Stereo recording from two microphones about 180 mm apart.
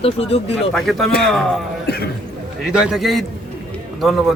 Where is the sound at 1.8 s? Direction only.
65° left (ahead or behind).